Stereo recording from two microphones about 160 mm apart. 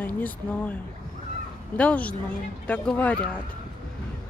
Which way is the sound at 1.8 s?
10° left (ahead or behind).